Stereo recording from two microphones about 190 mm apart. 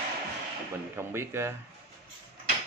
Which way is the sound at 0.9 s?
15° right (ahead or behind).